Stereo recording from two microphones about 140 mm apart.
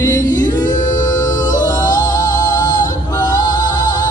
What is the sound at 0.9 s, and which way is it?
Music, 30° left (ahead or behind).